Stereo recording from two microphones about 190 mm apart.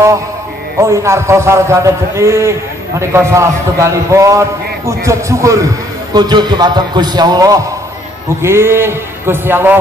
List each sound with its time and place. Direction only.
0.7 s a man's voice: 15° right (ahead or behind)